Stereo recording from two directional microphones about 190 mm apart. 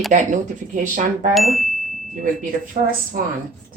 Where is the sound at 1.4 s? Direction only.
Centre (ahead or behind).